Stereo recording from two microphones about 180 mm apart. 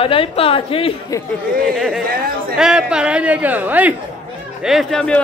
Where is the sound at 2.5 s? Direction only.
5° right (ahead or behind).